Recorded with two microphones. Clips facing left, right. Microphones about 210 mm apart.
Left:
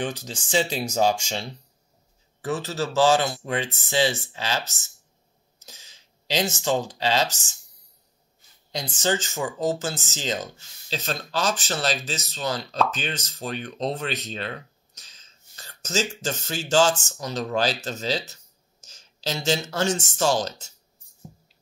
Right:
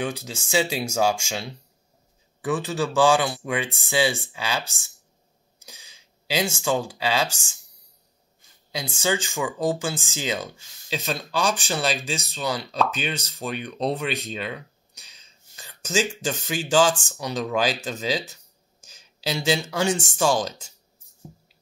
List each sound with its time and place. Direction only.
0.0 s speech: 10° right (ahead or behind)
5.6 s a sound: 10° right (ahead or behind)
7.0 s speech: 10° right (ahead or behind)
8.7 s speech: 10° right (ahead or behind)
17.6 s speech: 40° left (ahead or behind)
18.9 s speech: 10° right (ahead or behind)